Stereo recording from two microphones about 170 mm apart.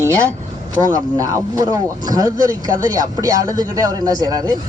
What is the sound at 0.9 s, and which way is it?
Speech, 20° right (ahead or behind).